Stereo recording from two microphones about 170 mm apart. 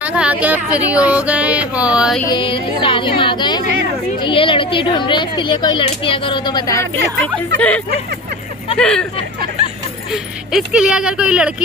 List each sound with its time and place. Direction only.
0.0 s speech: 10° right (ahead or behind)
2.2 s speech: 30° left (ahead or behind)
7.2 s speech: 10° left (ahead or behind)
9.6 s vehicle: 40° right (ahead or behind)
10.1 s speech: 5° right (ahead or behind)